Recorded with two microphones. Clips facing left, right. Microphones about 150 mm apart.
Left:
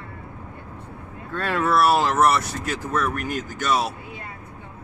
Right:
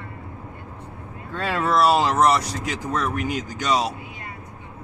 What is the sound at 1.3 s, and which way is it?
Vehicle, 10° right (ahead or behind).